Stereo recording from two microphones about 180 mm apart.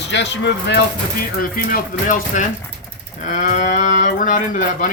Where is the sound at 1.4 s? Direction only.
50° left (ahead or behind).